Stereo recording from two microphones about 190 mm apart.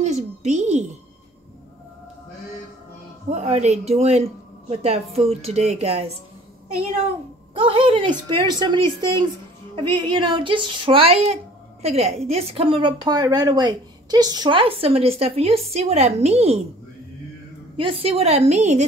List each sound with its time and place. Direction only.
0.0 s music: 35° right (ahead or behind)
3.3 s a woman's voice: 35° right (ahead or behind)
7.5 s a woman's voice: 30° right (ahead or behind)
17.7 s a woman's voice: 30° right (ahead or behind)